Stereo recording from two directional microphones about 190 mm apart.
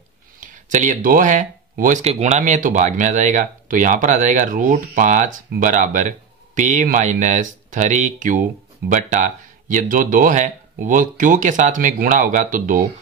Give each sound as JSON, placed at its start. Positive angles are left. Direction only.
{"t": 0.4, "sound": "speech", "side_deg": -40}